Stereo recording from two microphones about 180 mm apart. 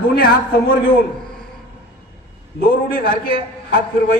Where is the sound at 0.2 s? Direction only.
55° left (ahead or behind).